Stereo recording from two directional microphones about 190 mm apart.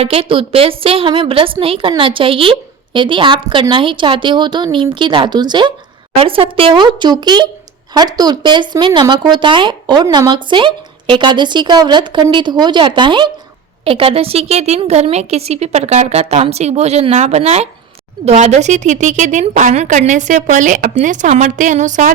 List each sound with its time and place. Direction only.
0.0 s a woman's voice: 30° right (ahead or behind)